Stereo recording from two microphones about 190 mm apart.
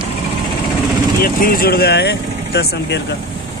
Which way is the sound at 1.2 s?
50° left (ahead or behind).